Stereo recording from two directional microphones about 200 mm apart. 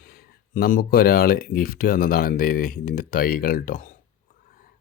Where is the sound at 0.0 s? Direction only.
50° left (ahead or behind).